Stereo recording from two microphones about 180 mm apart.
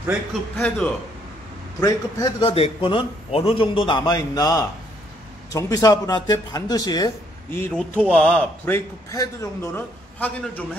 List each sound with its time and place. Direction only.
0.6 s a man's voice: 5° left (ahead or behind)
1.8 s a man's voice: 20° left (ahead or behind)
2.4 s a man's voice: 30° left (ahead or behind)
7.5 s a man's voice: 10° left (ahead or behind)